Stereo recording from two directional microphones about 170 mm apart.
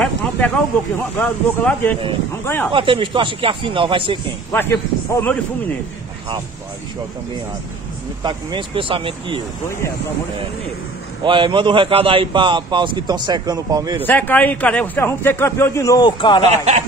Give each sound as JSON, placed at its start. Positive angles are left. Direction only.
{"t": 1.1, "sound": "a man's voice", "side_deg": 10}
{"t": 2.7, "sound": "speech", "side_deg": -30}
{"t": 4.5, "sound": "a man's voice", "side_deg": 15}
{"t": 8.2, "sound": "a man's voice", "side_deg": -25}
{"t": 11.2, "sound": "a man's voice", "side_deg": -30}
{"t": 14.0, "sound": "a man's voice", "side_deg": 10}
{"t": 16.4, "sound": "speech", "side_deg": -40}